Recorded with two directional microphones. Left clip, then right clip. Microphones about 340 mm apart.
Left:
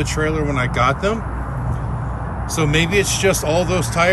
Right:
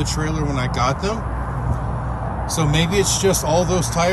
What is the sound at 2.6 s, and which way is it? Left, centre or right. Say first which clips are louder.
Speech: left 3 dB; centre.